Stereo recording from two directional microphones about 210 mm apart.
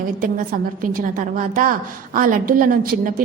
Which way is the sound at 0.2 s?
40° right (ahead or behind).